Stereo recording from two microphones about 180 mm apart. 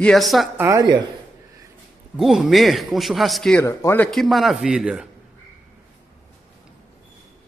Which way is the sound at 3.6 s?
15° left (ahead or behind).